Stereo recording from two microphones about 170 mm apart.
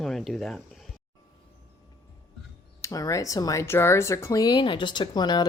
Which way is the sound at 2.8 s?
20° left (ahead or behind).